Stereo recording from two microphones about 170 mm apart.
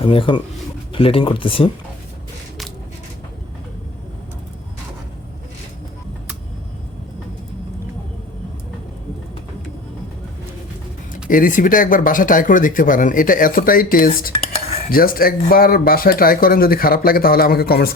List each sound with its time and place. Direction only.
0.0 s speech: 30° left (ahead or behind)
11.1 s speech: 55° left (ahead or behind)